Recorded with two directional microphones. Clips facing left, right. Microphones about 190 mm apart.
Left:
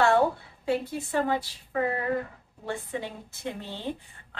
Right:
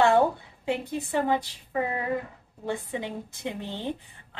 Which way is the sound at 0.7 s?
15° right (ahead or behind).